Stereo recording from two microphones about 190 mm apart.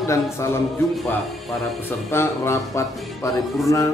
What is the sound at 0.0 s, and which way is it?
Speech, 15° left (ahead or behind).